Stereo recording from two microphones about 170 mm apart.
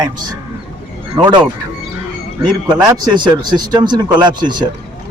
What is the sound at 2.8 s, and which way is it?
Speech, 25° right (ahead or behind).